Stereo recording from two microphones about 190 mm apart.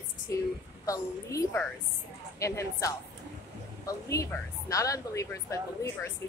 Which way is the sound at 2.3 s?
15° left (ahead or behind).